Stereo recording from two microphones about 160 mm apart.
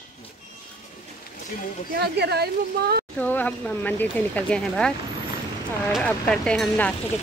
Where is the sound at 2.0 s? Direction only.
90° right.